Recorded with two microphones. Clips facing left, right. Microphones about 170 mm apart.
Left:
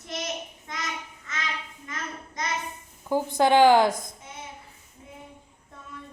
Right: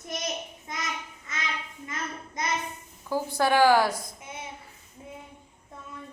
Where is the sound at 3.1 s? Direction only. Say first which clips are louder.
Left 4 dB; 20° left (ahead or behind).